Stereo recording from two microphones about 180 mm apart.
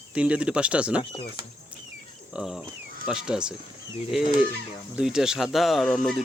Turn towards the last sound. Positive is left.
turn(degrees=0)  # may be behind; listen again after turning